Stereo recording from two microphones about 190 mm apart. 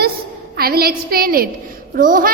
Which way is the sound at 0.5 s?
55° right (ahead or behind).